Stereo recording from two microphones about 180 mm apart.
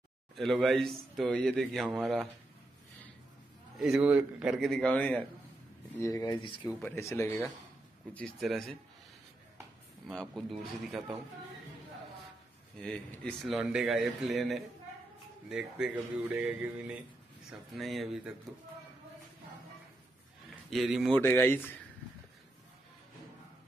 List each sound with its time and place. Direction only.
0.4 s a man's voice: centre (ahead or behind)
3.7 s a man's voice: 5° right (ahead or behind)
5.9 s speech: 20° left (ahead or behind)
6.8 s a man's voice: 15° left (ahead or behind)
10.0 s a man's voice: centre (ahead or behind)
12.8 s a man's voice: 5° left (ahead or behind)
20.7 s a man's voice: centre (ahead or behind)
21.2 s speech: 10° left (ahead or behind)